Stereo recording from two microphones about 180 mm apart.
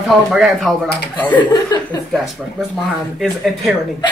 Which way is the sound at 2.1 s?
Centre (ahead or behind).